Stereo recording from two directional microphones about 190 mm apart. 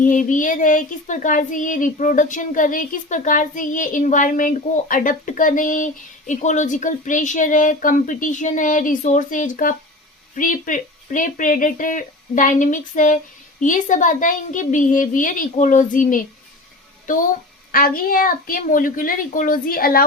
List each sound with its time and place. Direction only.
0.0 s child singing: 45° left (ahead or behind)